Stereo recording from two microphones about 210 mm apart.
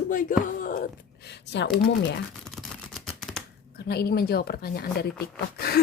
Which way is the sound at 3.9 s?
50° left (ahead or behind).